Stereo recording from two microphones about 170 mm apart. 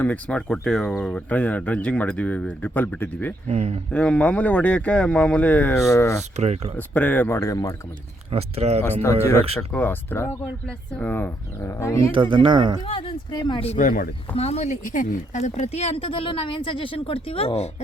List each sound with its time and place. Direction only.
0.0 s speech: 5° left (ahead or behind)
3.4 s speech: 40° right (ahead or behind)
3.9 s speech: 10° left (ahead or behind)
6.3 s speech: 40° right (ahead or behind)
6.7 s speech: 10° left (ahead or behind)
8.3 s speech: 35° right (ahead or behind)
8.9 s speech: 10° left (ahead or behind)
12.1 s speech: 30° right (ahead or behind)
12.8 s speech: 30° left (ahead or behind)
13.7 s speech: 50° left (ahead or behind)
14.3 s speech: 35° left (ahead or behind)